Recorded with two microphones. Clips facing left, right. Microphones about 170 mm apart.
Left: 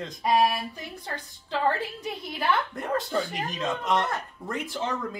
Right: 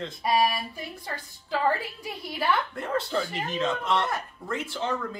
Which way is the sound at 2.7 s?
15° left (ahead or behind).